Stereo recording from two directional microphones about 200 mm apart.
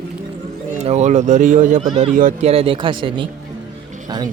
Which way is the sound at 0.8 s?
35° right (ahead or behind).